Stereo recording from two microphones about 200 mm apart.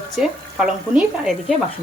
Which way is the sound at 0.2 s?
5° right (ahead or behind).